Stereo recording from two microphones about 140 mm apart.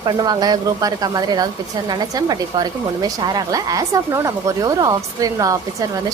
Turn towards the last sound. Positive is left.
turn(degrees=-25)  # may be behind; listen again after turning